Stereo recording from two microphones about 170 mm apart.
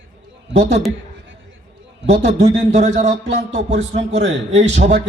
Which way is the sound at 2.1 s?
80° right.